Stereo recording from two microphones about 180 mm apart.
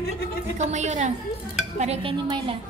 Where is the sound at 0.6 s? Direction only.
40° right (ahead or behind).